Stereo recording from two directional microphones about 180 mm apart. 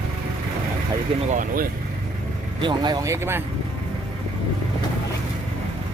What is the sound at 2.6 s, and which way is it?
Speech, 25° right (ahead or behind).